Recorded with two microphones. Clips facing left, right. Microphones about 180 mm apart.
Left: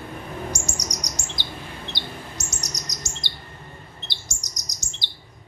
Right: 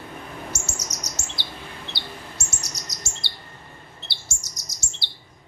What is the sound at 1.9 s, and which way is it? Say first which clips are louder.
Bird: left 2 dB; 20° left (ahead or behind).